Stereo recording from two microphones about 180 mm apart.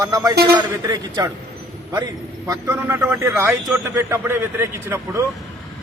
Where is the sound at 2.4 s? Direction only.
15° right (ahead or behind).